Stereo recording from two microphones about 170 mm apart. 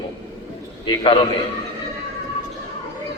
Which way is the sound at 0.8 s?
30° left (ahead or behind).